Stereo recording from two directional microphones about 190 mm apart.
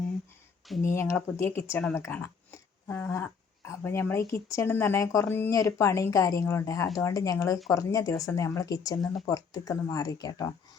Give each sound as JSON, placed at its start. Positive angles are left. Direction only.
{"t": 0.9, "sound": "speech", "side_deg": 15}